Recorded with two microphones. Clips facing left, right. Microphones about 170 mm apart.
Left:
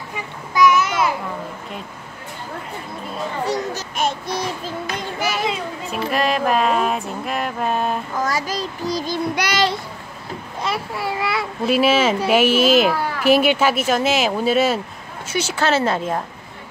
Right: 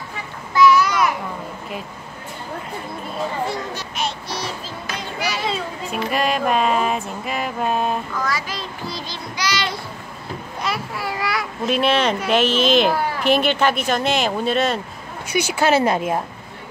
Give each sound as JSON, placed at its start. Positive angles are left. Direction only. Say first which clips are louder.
{"t": 0.6, "sound": "a sound", "louder": "right 1 dB", "side_deg": 20}
{"t": 3.4, "sound": "a child's voice", "louder": "left 3 dB", "side_deg": 40}
{"t": 5.9, "sound": "speech", "louder": "left 1 dB", "side_deg": 0}
{"t": 8.2, "sound": "child singing", "louder": "left 3 dB", "side_deg": 45}
{"t": 9.3, "sound": "child singing", "louder": "left 3 dB", "side_deg": 60}
{"t": 10.6, "sound": "a child's voice", "louder": "left 2 dB", "side_deg": 25}
{"t": 11.6, "sound": "speech", "louder": "left 2 dB", "side_deg": 5}
{"t": 15.2, "sound": "speech", "louder": "right 2 dB", "side_deg": -15}